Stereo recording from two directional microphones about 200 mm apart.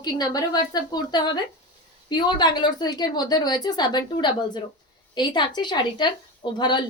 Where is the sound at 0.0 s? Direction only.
20° left (ahead or behind).